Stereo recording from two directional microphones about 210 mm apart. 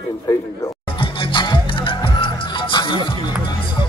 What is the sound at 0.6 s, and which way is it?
Music, 25° left (ahead or behind).